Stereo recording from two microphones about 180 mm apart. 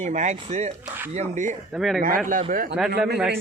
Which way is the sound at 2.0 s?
50° right (ahead or behind).